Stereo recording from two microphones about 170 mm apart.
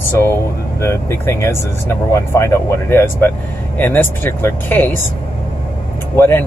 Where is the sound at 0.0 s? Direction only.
15° left (ahead or behind).